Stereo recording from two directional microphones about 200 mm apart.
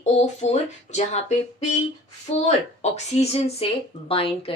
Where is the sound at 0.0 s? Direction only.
35° left (ahead or behind).